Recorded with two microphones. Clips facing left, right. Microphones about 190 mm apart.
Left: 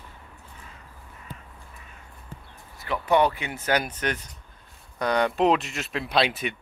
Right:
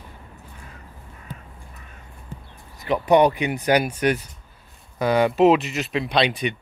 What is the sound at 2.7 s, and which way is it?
Speech, 20° right (ahead or behind).